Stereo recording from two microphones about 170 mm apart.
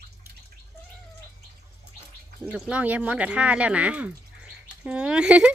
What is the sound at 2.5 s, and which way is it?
Speech, 5° right (ahead or behind).